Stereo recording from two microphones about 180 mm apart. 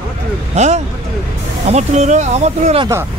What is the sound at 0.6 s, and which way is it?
Speech, 40° right (ahead or behind).